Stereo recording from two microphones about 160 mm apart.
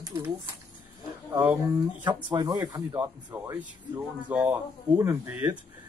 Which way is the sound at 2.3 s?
25° right (ahead or behind).